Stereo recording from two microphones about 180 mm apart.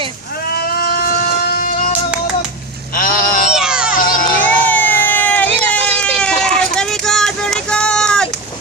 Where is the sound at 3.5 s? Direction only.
5° right (ahead or behind).